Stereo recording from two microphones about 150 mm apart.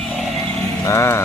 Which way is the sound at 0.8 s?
20° left (ahead or behind).